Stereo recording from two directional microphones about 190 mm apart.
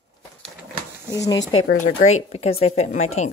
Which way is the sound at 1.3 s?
20° left (ahead or behind).